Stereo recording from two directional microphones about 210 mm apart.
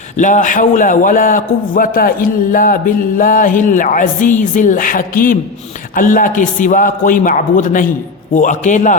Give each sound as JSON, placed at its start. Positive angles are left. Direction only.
{"t": 0.2, "sound": "a man's voice", "side_deg": 35}